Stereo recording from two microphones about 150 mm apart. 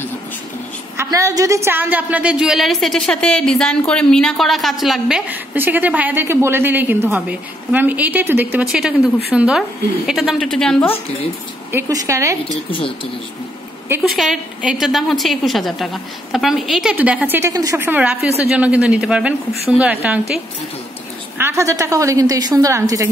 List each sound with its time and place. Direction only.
0.9 s a woman's voice: 20° right (ahead or behind); by 10.9 s 5° left (ahead or behind)
11.7 s a woman's voice: 20° right (ahead or behind)
12.7 s speech: 35° left (ahead or behind)
14.0 s a woman's voice: centre (ahead or behind)
17.5 s a woman's voice: 20° right (ahead or behind)
21.4 s a woman's voice: 20° right (ahead or behind)